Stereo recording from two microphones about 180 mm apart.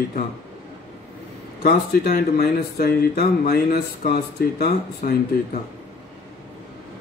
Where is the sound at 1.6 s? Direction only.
55° left (ahead or behind).